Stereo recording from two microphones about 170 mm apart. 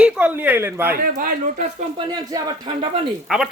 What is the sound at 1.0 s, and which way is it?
Speech, 50° right (ahead or behind).